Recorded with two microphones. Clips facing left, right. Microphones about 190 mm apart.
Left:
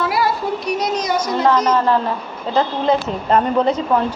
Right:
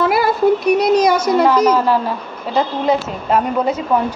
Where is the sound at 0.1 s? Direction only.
55° right (ahead or behind).